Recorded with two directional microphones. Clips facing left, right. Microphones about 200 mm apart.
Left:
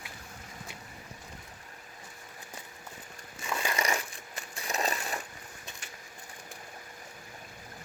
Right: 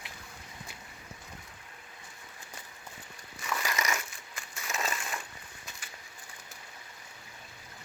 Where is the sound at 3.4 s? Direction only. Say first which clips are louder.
Left 2 dB; 30° left (ahead or behind).